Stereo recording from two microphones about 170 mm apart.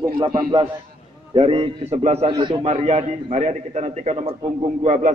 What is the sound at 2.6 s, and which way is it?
A man's voice, 40° right (ahead or behind).